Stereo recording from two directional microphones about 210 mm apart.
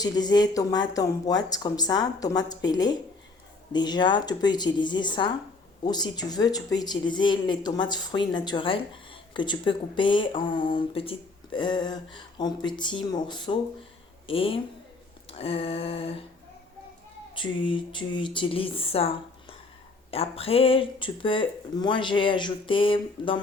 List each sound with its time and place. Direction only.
0.0 s speech: 20° left (ahead or behind)
17.3 s speech: 25° left (ahead or behind)